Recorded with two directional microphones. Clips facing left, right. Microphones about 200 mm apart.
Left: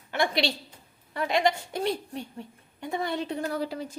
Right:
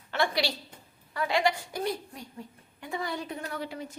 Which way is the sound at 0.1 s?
20° left (ahead or behind).